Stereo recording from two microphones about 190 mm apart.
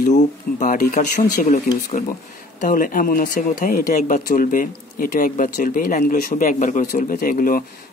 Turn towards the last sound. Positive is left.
turn(degrees=45)  # may be behind; listen again after turning